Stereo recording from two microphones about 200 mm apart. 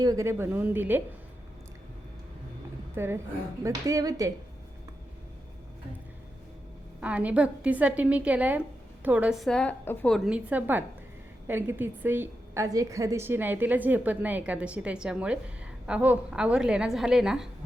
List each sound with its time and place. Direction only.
0.0 s a woman's voice: 15° right (ahead or behind)
2.9 s a woman's voice: 10° right (ahead or behind)
7.0 s a woman's voice: 5° right (ahead or behind)